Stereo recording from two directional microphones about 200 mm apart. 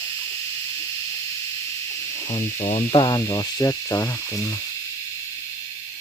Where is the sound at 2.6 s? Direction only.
35° left (ahead or behind).